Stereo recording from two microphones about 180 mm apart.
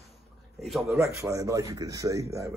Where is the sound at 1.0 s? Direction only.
15° right (ahead or behind).